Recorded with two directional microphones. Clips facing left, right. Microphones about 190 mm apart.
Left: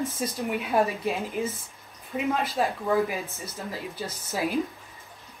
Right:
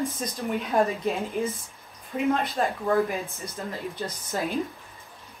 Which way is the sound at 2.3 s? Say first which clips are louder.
Right 1 dB; 5° left (ahead or behind).